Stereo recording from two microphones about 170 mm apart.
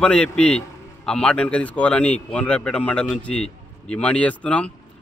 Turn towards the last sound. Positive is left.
turn(degrees=5)  # may be behind; listen again after turning